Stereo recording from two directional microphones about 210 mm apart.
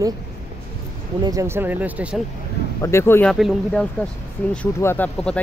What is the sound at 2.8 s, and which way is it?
Speech, 15° left (ahead or behind).